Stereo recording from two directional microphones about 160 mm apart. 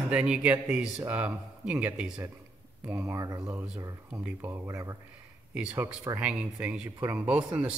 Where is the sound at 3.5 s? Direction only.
5° right (ahead or behind).